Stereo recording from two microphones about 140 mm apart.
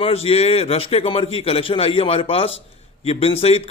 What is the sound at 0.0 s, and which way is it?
A man's voice, 45° left (ahead or behind).